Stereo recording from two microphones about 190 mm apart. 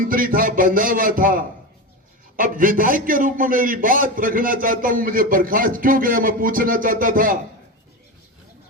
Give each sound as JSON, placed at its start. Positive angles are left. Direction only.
{"t": 0.0, "sound": "a man's voice", "side_deg": -45}